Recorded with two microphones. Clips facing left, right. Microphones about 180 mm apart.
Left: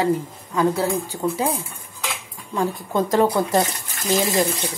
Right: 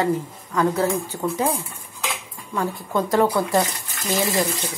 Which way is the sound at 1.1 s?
10° left (ahead or behind).